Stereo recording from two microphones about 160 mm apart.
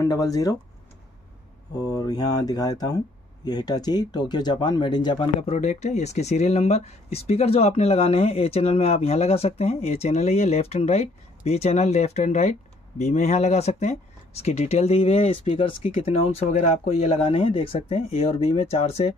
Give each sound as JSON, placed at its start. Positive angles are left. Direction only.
{"t": 0.0, "sound": "speech", "side_deg": 25}
{"t": 1.8, "sound": "speech", "side_deg": 25}